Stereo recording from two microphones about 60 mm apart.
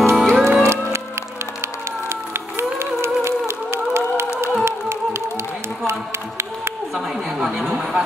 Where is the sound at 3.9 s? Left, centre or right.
Right.